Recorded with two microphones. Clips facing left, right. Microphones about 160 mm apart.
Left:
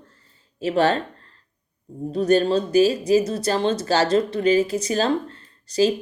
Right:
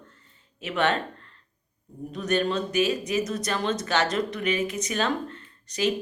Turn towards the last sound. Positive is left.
turn(degrees=30)  # may be behind; listen again after turning